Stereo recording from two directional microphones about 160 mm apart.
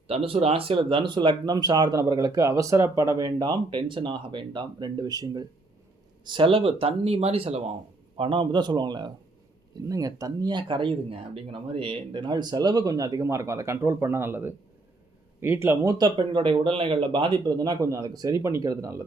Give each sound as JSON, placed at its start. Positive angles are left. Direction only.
{"t": 0.1, "sound": "speech", "side_deg": -35}